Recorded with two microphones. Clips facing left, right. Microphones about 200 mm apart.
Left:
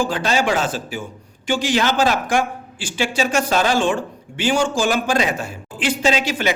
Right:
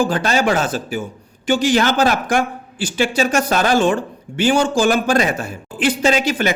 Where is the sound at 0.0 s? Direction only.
55° right (ahead or behind).